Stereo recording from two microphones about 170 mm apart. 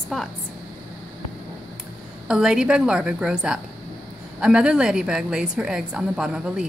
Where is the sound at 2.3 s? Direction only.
5° right (ahead or behind).